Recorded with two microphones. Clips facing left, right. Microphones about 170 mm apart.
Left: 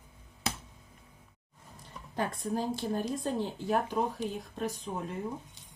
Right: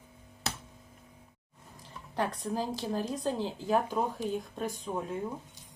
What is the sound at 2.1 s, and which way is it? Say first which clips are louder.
Speech: even; 90° right.